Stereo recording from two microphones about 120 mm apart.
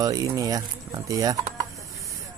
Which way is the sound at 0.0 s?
30° right (ahead or behind).